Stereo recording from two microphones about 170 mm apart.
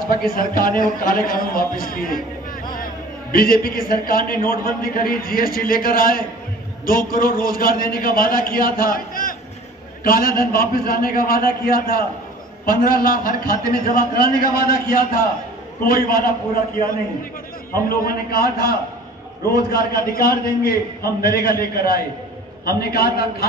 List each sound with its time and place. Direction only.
0.2 s a man's voice: 55° left (ahead or behind)
17.8 s a man's voice: 60° left (ahead or behind)